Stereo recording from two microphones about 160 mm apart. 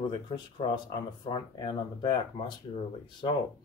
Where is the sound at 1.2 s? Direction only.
30° left (ahead or behind).